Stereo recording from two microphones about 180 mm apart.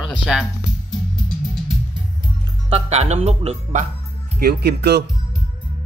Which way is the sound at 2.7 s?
35° right (ahead or behind).